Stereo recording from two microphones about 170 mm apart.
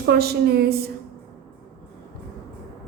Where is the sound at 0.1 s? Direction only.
70° right (ahead or behind).